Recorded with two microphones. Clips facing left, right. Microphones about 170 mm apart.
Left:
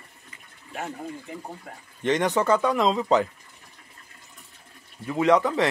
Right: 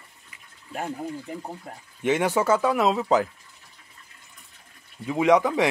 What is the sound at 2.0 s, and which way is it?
Speech, 10° right (ahead or behind).